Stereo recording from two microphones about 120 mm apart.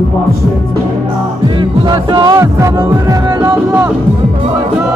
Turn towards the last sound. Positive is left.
turn(degrees=-20)  # may be behind; listen again after turning